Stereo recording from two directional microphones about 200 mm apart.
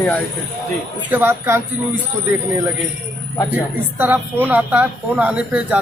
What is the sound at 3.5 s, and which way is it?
Speech, 10° right (ahead or behind).